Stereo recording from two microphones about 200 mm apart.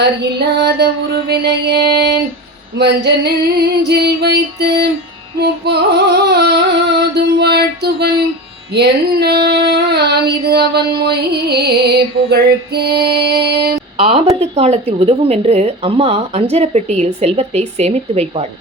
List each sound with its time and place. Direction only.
0.0 s music: 55° right (ahead or behind)
2.7 s female singing: 55° right (ahead or behind)
6.2 s female singing: 55° right (ahead or behind)
13.9 s speech: 30° right (ahead or behind)